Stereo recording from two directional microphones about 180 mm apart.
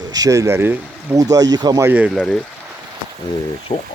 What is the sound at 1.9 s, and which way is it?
Speech, 10° right (ahead or behind).